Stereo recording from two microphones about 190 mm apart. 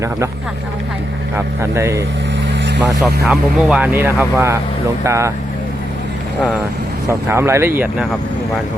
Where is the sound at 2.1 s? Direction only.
75° right (ahead or behind).